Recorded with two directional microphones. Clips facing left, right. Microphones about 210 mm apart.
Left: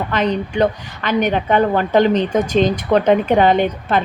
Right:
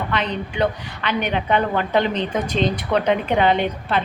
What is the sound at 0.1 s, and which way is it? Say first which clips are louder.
Speech: left 6 dB; 45° left (ahead or behind).